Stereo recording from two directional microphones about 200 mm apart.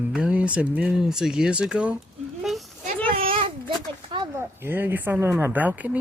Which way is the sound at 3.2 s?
25° right (ahead or behind).